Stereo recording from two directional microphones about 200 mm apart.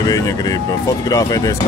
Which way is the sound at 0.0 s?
20° left (ahead or behind).